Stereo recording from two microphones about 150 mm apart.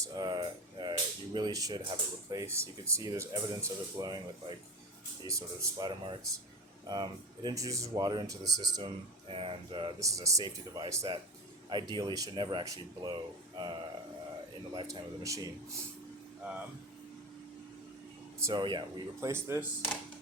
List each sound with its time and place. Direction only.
0.0 s speech: 25° right (ahead or behind)
9.3 s speech: 40° right (ahead or behind)
14.7 s speech: 25° right (ahead or behind)
16.4 s speech: 10° right (ahead or behind)
18.5 s speech: 30° right (ahead or behind)
19.3 s speech: 15° right (ahead or behind)